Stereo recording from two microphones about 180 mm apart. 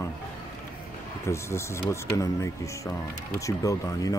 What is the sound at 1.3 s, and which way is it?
Speech, 15° left (ahead or behind).